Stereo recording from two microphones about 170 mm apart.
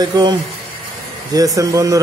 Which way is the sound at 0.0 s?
25° right (ahead or behind).